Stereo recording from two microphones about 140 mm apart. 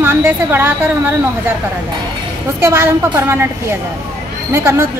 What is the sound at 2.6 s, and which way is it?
A woman's voice, 15° right (ahead or behind).